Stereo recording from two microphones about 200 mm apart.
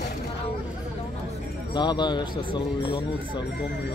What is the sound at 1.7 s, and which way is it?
Speech, 20° left (ahead or behind).